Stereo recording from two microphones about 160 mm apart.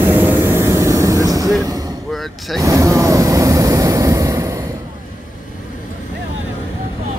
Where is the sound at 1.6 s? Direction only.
25° right (ahead or behind).